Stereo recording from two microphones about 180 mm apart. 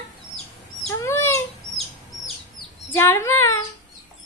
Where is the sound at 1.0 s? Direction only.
15° left (ahead or behind).